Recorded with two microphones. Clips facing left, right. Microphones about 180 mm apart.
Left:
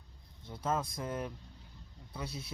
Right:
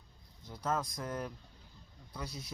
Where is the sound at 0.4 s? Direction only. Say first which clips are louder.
Left 1 dB; 25° left (ahead or behind).